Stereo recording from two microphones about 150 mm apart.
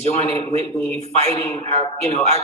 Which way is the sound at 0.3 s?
25° left (ahead or behind).